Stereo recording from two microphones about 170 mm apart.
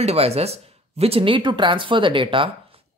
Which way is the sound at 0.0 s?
40° right (ahead or behind).